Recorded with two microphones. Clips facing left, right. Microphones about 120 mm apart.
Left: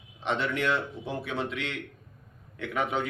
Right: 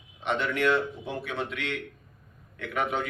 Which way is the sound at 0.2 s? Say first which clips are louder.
Right 2 dB; 30° left (ahead or behind).